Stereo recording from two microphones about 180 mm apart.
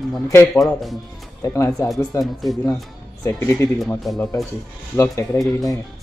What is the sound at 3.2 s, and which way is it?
Speech, 15° left (ahead or behind).